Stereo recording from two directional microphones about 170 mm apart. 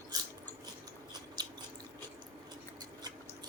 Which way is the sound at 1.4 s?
25° right (ahead or behind).